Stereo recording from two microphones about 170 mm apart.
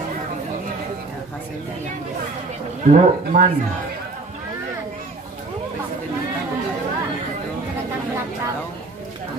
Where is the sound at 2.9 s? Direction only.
45° right (ahead or behind).